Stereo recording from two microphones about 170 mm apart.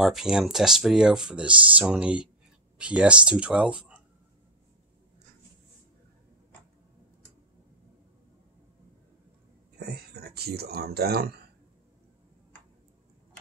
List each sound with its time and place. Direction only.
0.0 s speech: 5° right (ahead or behind)
9.8 s speech: 70° right (ahead or behind)